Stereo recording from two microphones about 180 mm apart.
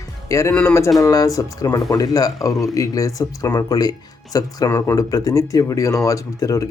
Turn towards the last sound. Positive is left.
turn(degrees=20)  # may be behind; listen again after turning